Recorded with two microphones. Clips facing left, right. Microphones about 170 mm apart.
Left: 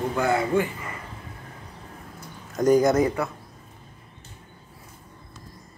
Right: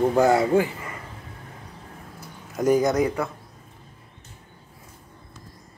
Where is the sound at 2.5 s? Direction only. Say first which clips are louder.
Left 2 dB; 5° right (ahead or behind).